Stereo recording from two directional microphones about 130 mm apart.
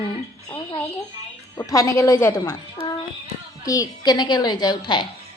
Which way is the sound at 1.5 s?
25° left (ahead or behind).